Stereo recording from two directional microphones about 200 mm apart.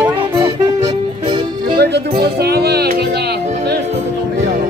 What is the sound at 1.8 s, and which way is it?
Music, 55° right (ahead or behind).